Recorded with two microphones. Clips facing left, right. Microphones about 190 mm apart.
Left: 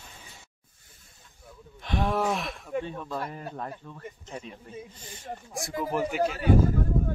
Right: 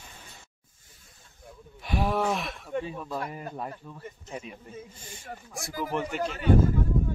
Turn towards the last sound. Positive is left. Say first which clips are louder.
# even
turn(degrees=45)  # may be behind; listen again after turning